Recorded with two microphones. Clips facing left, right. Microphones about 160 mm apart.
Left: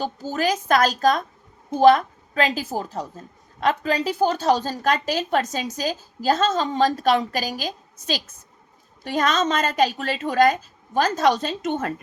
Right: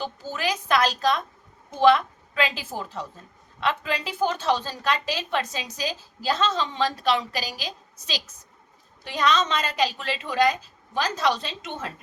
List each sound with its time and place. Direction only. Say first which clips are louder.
0.0 s a woman's voice: left 5 dB; 40° left (ahead or behind)